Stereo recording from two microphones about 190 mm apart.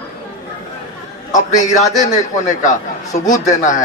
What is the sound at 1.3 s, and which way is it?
A man's voice, 40° left (ahead or behind).